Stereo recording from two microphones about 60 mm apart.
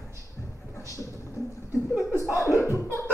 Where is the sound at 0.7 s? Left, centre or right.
Left.